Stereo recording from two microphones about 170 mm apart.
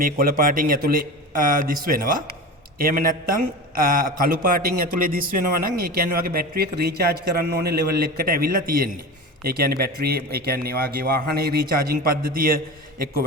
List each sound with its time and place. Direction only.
0.0 s a man's voice: 55° right (ahead or behind)